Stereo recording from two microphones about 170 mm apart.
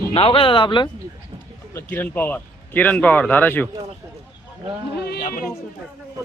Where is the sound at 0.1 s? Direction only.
35° left (ahead or behind).